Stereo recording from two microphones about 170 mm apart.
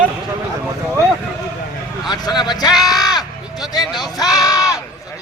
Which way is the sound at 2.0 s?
25° left (ahead or behind).